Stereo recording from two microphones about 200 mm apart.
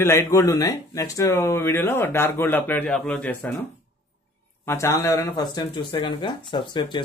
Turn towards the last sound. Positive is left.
turn(degrees=25)  # may be behind; listen again after turning